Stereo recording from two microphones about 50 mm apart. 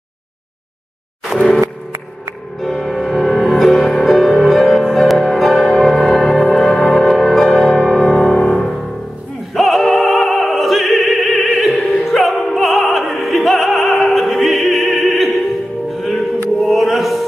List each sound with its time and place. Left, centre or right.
1.3 s music: centre
2.6 s music: centre
6.7 s music: centre
7.0 s music: centre
9.5 s opera: centre
16.5 s chant: centre